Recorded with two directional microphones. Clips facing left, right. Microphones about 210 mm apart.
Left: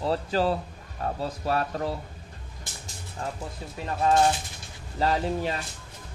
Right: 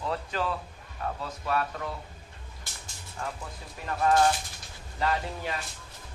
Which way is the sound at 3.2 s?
25° left (ahead or behind).